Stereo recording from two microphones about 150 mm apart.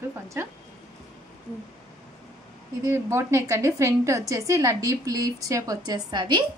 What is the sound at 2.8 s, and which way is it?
A woman's voice, 20° right (ahead or behind).